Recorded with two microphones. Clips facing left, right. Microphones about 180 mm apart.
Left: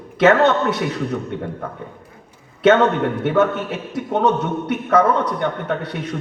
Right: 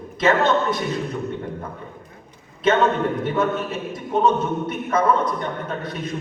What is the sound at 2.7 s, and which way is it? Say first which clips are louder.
A man's voice: left 4 dB; 75° left (ahead or behind).